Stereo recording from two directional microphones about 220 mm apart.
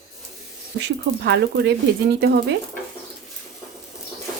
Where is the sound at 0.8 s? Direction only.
50° right (ahead or behind).